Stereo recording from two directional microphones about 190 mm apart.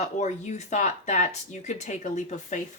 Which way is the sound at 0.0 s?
40° left (ahead or behind).